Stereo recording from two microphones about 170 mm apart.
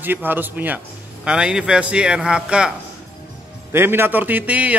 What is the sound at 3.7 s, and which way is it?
A man's voice, 15° right (ahead or behind).